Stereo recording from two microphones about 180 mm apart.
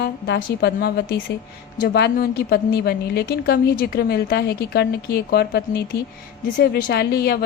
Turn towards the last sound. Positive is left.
turn(degrees=60)  # may be behind; listen again after turning